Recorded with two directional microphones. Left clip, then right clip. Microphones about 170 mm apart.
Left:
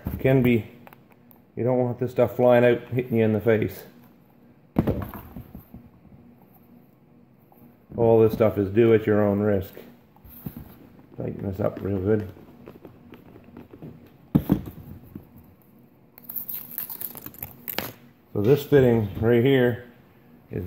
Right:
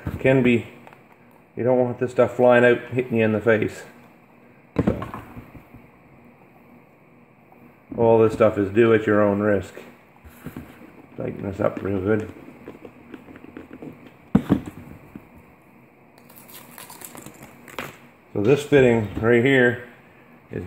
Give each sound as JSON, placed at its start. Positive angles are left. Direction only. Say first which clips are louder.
{"t": 0.2, "sound": "speech", "louder": "right 3 dB", "side_deg": 20}
{"t": 1.6, "sound": "speech", "louder": "right 4 dB", "side_deg": 25}
{"t": 8.0, "sound": "speech", "louder": "right 2 dB", "side_deg": 20}
{"t": 11.1, "sound": "speech", "louder": "right 3 dB", "side_deg": 20}
{"t": 18.3, "sound": "speech", "louder": "right 2 dB", "side_deg": 20}